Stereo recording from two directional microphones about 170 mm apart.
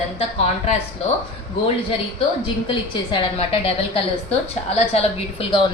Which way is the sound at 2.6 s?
30° left (ahead or behind).